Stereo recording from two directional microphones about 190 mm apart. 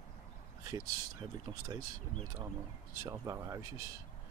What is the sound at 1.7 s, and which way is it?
Speech, 20° right (ahead or behind).